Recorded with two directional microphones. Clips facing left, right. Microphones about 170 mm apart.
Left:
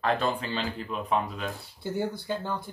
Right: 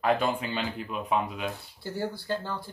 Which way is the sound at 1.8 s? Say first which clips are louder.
Left 2 dB; 20° left (ahead or behind).